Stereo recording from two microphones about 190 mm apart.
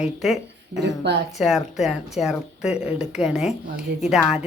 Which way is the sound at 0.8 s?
60° right (ahead or behind).